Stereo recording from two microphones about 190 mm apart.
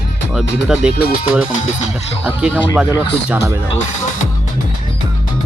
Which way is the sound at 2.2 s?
5° right (ahead or behind).